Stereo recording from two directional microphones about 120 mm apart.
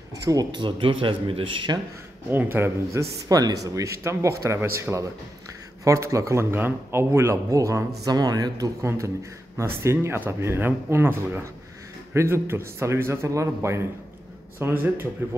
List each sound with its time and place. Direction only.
0.1 s speech: 30° right (ahead or behind)
2.3 s a man's voice: 20° right (ahead or behind)